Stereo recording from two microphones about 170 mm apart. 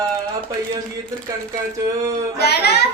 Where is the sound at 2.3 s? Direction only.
75° left (ahead or behind).